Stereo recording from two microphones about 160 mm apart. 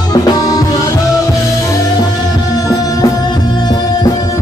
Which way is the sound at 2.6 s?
25° left (ahead or behind).